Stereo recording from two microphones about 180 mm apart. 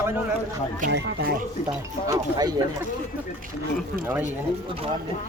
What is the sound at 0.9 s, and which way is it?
Speech, 70° right (ahead or behind).